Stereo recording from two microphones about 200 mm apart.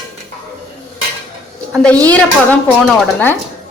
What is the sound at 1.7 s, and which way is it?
Speech, 5° left (ahead or behind).